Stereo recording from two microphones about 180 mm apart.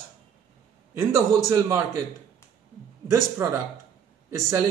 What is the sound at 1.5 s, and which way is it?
Speech, 20° right (ahead or behind).